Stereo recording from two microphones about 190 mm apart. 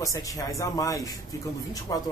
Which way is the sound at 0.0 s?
15° left (ahead or behind).